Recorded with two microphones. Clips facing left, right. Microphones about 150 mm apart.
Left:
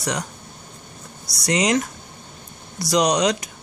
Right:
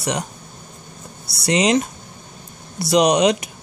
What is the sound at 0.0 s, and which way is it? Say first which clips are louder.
Speech: right 2 dB; 25° right (ahead or behind).